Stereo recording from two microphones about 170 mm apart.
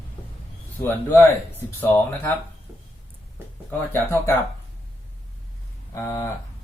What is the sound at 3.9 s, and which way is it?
Speech, 15° left (ahead or behind).